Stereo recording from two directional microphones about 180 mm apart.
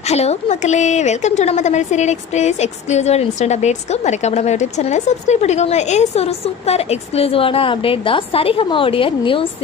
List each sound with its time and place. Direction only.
0.1 s a woman's voice: 35° left (ahead or behind)